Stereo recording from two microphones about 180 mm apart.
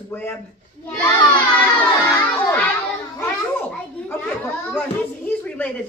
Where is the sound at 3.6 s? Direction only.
10° left (ahead or behind).